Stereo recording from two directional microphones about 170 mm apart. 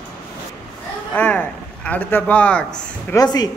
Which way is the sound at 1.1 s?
10° left (ahead or behind).